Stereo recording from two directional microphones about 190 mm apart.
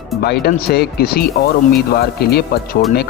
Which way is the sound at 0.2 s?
55° left (ahead or behind).